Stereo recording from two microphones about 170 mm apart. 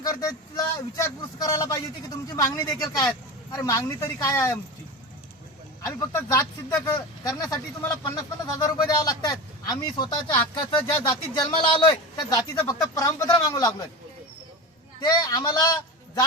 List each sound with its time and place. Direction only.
0.0 s speech: 20° left (ahead or behind)
5.8 s speech: 20° left (ahead or behind)
15.0 s speech: 25° left (ahead or behind)